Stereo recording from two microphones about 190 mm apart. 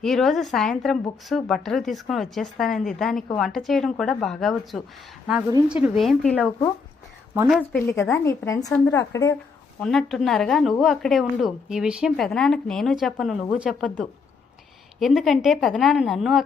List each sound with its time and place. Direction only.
0.0 s a woman's voice: centre (ahead or behind)
8.1 s speech: 15° left (ahead or behind)
9.8 s a woman's voice: centre (ahead or behind)